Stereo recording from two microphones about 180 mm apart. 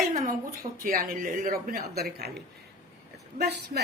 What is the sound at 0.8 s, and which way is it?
A woman's voice, 55° right (ahead or behind).